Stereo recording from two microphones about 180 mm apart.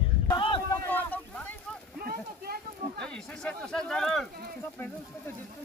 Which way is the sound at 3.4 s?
5° left (ahead or behind).